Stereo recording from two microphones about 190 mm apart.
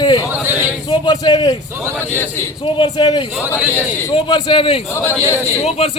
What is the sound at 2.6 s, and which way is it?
Speech, 25° left (ahead or behind).